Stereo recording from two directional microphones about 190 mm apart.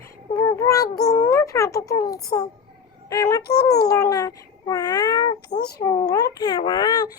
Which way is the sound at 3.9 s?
20° left (ahead or behind).